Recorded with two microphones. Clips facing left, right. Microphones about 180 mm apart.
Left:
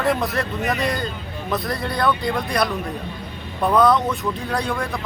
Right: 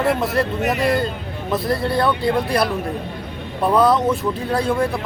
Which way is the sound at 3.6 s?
5° right (ahead or behind).